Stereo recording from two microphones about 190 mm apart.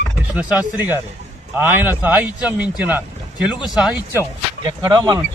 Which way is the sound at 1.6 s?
10° right (ahead or behind).